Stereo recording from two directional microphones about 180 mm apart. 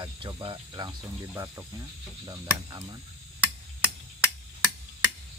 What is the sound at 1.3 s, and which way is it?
Cricket, 15° right (ahead or behind).